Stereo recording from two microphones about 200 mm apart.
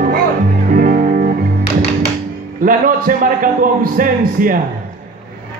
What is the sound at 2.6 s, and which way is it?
A man's voice, 45° right (ahead or behind).